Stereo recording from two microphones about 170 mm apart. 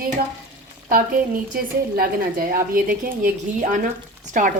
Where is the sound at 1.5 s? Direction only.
60° right (ahead or behind).